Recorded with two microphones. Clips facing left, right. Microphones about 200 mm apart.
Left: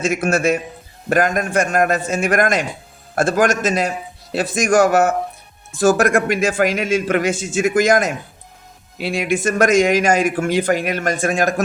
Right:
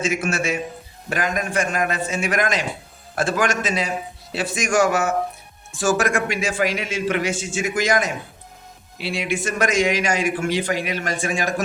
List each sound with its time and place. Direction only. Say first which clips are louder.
0.1 s a man's voice: left 6 dB; 55° left (ahead or behind)
4.8 s a man's voice: left 3 dB; 55° left (ahead or behind)